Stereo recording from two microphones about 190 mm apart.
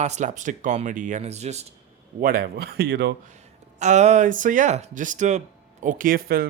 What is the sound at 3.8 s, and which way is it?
Speech, 35° right (ahead or behind).